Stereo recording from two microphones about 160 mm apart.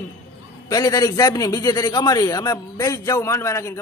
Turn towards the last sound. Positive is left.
turn(degrees=20)  # may be behind; listen again after turning